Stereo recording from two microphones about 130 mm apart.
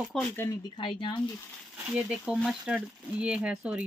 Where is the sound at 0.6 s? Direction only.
40° left (ahead or behind).